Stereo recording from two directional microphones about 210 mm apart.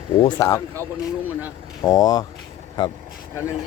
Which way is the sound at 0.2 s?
20° left (ahead or behind).